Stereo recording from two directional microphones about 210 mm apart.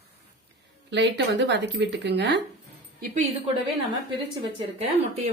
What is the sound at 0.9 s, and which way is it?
Speech, 55° right (ahead or behind).